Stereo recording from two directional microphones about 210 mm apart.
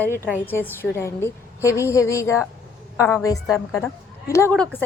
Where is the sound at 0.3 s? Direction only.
10° left (ahead or behind).